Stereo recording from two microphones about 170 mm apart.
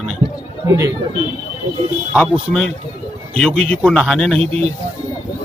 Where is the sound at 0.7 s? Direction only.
15° right (ahead or behind).